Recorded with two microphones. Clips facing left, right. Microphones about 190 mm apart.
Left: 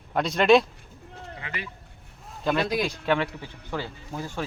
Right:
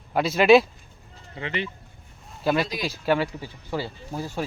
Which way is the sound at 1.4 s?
25° right (ahead or behind).